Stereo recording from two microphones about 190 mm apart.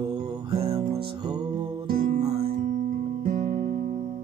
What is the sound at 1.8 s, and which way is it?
Music, 50° right (ahead or behind).